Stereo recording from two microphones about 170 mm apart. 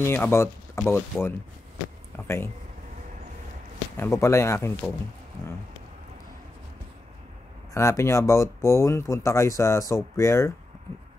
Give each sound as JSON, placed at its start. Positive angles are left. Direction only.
{"t": 0.0, "sound": "speech", "side_deg": 15}
{"t": 3.9, "sound": "speech", "side_deg": 15}
{"t": 7.7, "sound": "speech", "side_deg": 15}